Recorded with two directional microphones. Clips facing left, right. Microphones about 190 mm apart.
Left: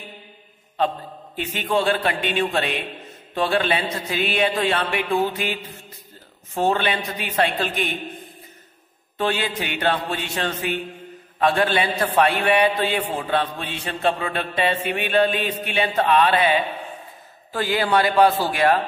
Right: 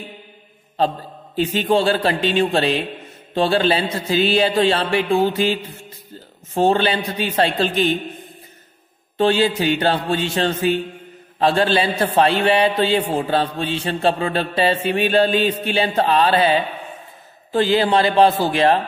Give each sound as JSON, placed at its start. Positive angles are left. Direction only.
{"t": 0.7, "sound": "a man's voice", "side_deg": -30}
{"t": 9.2, "sound": "a man's voice", "side_deg": -30}